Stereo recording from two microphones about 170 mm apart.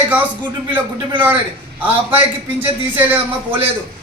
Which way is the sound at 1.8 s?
10° right (ahead or behind).